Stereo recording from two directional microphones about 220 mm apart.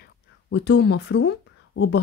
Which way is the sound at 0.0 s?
50° left (ahead or behind).